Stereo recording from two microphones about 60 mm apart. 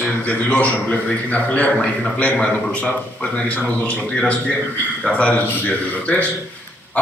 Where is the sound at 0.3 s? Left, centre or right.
Left.